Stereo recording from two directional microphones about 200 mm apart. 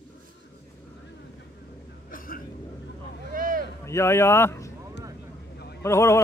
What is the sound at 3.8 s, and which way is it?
Speech, 15° left (ahead or behind).